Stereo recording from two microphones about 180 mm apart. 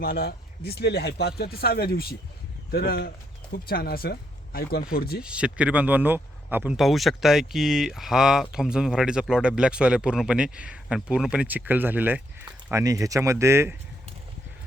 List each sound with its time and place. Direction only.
0.0 s speech: 60° left (ahead or behind)
5.2 s speech: 5° right (ahead or behind)